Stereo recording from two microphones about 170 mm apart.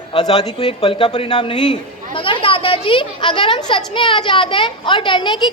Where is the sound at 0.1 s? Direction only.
35° left (ahead or behind).